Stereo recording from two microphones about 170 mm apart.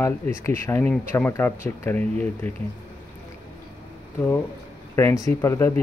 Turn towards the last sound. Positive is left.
turn(degrees=15)  # may be behind; listen again after turning